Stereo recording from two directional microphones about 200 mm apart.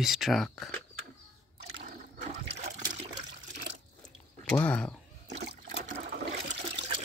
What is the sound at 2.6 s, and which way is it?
Water, 35° right (ahead or behind).